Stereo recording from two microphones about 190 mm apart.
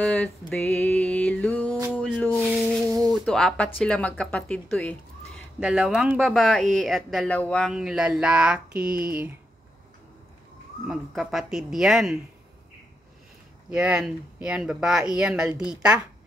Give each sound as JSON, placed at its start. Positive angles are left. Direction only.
{"t": 0.0, "sound": "music", "side_deg": 5}
{"t": 3.1, "sound": "speech", "side_deg": 5}
{"t": 10.9, "sound": "speech", "side_deg": 0}
{"t": 13.7, "sound": "speech", "side_deg": -5}